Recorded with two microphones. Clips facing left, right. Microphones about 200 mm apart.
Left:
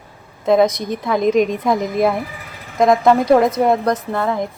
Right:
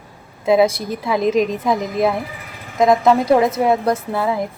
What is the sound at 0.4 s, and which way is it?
A woman's voice, 5° right (ahead or behind).